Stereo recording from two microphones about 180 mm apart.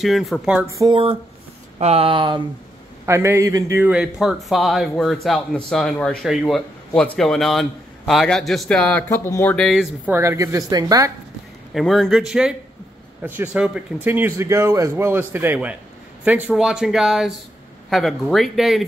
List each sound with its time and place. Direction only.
0.0 s a man's voice: centre (ahead or behind)
0.7 s a woman's voice: 25° right (ahead or behind)
3.1 s a man's voice: 15° right (ahead or behind)
10.1 s a woman's voice: 15° right (ahead or behind)
11.7 s a man's voice: centre (ahead or behind)